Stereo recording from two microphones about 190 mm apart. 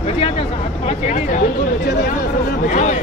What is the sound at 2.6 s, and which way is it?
Speech, 45° left (ahead or behind).